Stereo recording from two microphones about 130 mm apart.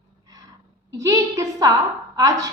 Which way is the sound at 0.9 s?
25° right (ahead or behind).